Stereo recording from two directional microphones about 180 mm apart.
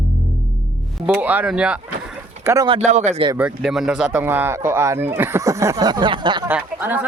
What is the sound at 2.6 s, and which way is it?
Speech, 35° right (ahead or behind).